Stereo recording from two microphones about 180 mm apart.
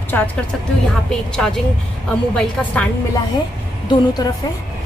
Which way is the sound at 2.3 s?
10° left (ahead or behind).